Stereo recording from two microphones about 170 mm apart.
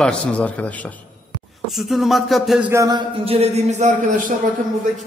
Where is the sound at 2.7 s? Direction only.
20° right (ahead or behind).